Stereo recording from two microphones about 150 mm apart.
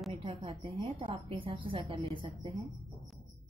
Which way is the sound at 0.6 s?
45° right (ahead or behind).